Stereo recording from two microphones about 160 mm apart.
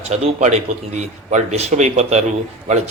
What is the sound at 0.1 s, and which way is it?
A man's voice, 45° right (ahead or behind).